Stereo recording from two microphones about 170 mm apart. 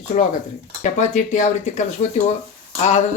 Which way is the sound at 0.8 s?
45° left (ahead or behind).